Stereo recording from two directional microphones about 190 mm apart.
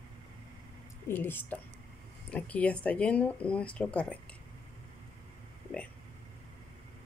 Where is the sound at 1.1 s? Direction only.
10° left (ahead or behind).